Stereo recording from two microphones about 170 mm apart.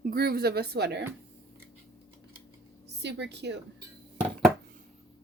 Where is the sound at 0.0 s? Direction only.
65° right (ahead or behind).